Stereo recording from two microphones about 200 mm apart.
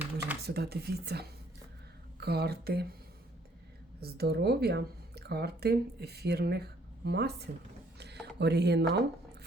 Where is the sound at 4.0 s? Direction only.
50° right (ahead or behind).